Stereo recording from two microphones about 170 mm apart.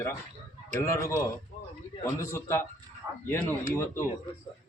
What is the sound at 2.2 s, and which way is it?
A man's voice, 15° left (ahead or behind).